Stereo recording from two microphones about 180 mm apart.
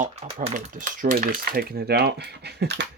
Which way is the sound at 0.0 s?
40° right (ahead or behind).